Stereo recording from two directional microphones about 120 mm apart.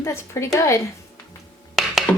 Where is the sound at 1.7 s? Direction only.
Centre (ahead or behind).